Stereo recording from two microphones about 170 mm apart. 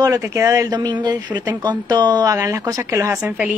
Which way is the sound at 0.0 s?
20° right (ahead or behind).